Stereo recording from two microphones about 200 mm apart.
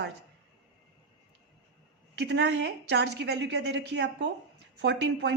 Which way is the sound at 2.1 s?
60° right (ahead or behind).